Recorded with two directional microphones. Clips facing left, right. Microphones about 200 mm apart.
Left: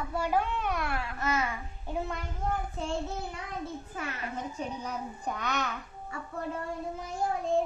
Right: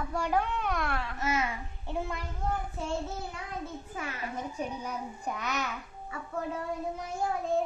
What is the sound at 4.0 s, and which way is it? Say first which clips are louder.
A child's voice: right 1 dB; 10° right (ahead or behind).